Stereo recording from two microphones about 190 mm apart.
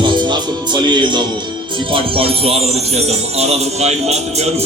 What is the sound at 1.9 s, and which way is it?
Music, 30° right (ahead or behind).